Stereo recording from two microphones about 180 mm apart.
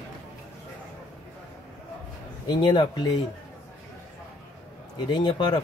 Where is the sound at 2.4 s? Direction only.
25° left (ahead or behind).